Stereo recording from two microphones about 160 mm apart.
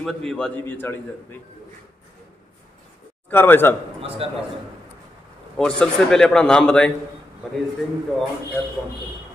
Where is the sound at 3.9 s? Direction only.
35° right (ahead or behind).